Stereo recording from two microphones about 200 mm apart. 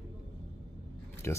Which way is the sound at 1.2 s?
10° left (ahead or behind).